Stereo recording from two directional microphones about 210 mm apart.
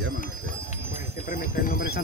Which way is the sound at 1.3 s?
40° left (ahead or behind).